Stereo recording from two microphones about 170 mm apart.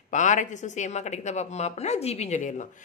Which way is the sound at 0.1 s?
45° left (ahead or behind).